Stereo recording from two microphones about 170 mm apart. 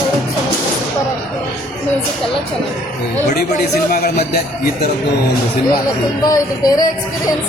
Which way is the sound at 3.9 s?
65° left (ahead or behind).